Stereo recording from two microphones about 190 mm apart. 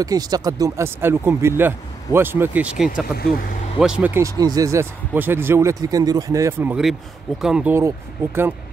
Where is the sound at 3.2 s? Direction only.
50° left (ahead or behind).